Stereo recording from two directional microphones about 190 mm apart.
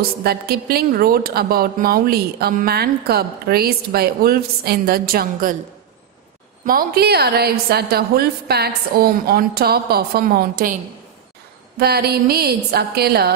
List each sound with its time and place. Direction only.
0.2 s a woman's voice: 55° right (ahead or behind)
6.6 s a woman's voice: 50° right (ahead or behind)